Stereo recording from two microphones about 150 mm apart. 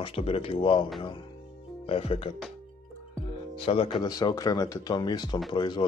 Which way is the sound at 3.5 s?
35° left (ahead or behind).